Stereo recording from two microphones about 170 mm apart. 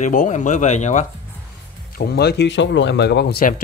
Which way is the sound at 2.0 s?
70° left (ahead or behind).